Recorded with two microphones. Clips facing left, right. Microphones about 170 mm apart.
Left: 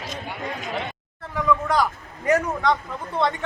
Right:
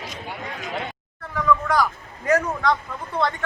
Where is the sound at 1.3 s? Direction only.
20° left (ahead or behind).